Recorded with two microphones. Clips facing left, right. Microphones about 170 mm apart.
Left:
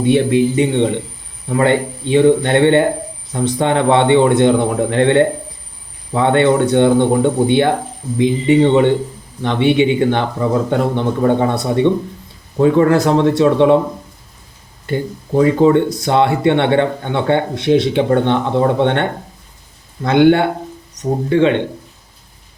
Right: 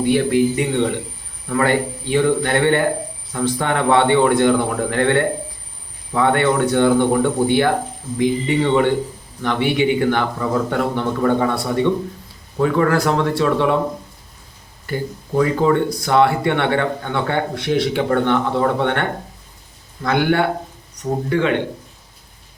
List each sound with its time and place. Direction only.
0.0 s speech: 20° left (ahead or behind)
14.8 s speech: 25° left (ahead or behind)